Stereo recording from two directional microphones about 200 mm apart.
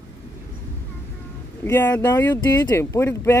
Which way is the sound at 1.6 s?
10° left (ahead or behind).